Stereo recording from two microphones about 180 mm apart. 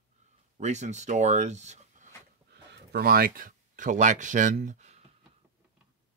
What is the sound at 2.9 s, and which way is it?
Speech, 55° right (ahead or behind).